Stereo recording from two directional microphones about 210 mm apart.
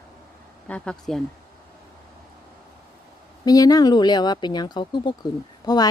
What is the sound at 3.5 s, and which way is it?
Speech, 15° left (ahead or behind).